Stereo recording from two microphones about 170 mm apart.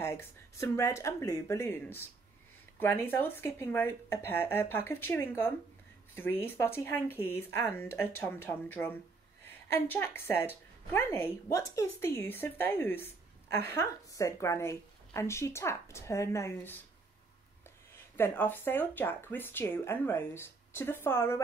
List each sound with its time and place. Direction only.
0.0 s a woman's voice: 15° left (ahead or behind)
18.1 s a woman's voice: 10° left (ahead or behind)